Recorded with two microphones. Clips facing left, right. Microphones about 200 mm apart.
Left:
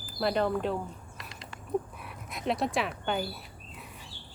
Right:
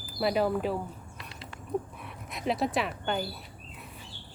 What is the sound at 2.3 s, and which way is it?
Speech, centre (ahead or behind).